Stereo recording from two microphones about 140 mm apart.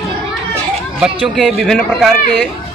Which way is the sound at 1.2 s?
Centre (ahead or behind).